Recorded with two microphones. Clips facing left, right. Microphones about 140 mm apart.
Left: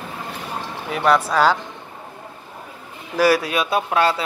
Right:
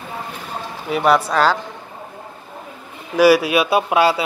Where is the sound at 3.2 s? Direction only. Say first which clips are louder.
Right 5 dB; 5° right (ahead or behind).